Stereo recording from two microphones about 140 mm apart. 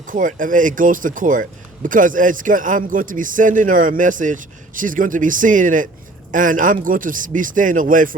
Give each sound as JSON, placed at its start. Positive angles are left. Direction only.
{"t": 0.1, "sound": "speech", "side_deg": -70}